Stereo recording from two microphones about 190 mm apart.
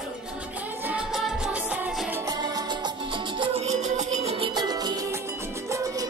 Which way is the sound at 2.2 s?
20° right (ahead or behind).